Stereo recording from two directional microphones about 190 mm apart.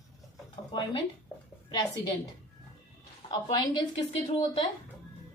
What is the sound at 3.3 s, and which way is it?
Speech, 25° left (ahead or behind).